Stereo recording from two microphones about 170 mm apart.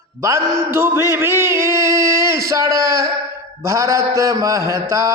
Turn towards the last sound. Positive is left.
turn(degrees=-15)  # may be behind; listen again after turning